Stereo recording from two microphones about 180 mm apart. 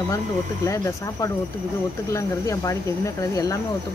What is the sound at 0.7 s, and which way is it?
Speech, 15° left (ahead or behind).